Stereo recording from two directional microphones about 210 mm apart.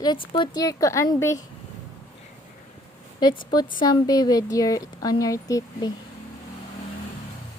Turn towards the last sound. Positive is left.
turn(degrees=20)  # may be behind; listen again after turning